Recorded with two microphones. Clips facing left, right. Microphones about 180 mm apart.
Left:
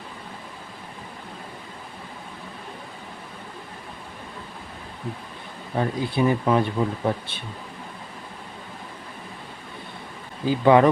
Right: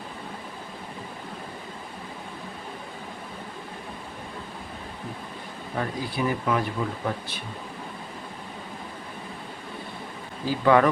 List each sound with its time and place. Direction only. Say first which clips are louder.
5.8 s speech: left 5 dB; 25° left (ahead or behind)
10.4 s speech: left 3 dB; 20° left (ahead or behind)